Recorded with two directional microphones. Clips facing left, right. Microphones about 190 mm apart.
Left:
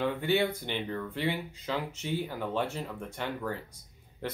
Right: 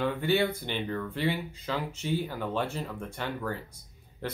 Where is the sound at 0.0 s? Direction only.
20° left (ahead or behind).